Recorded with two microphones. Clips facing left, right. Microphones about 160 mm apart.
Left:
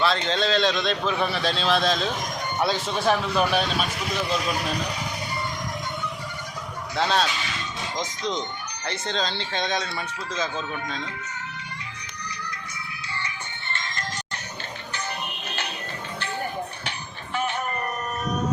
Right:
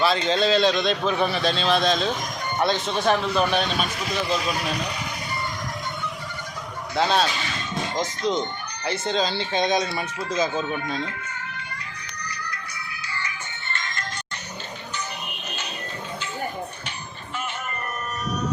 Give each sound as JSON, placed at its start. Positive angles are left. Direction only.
{"t": 0.0, "sound": "speech", "side_deg": -5}
{"t": 6.9, "sound": "speech", "side_deg": 0}
{"t": 13.7, "sound": "music", "side_deg": 30}